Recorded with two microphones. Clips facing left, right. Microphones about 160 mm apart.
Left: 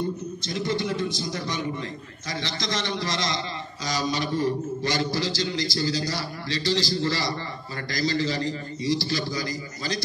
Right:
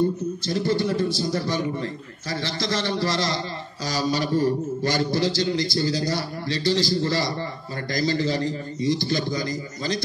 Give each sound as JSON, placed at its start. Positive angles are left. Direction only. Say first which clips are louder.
{"t": 0.5, "sound": "a man's voice", "louder": "right 4 dB", "side_deg": -35}